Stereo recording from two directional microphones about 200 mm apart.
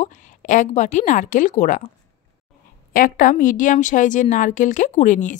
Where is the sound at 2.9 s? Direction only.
45° left (ahead or behind).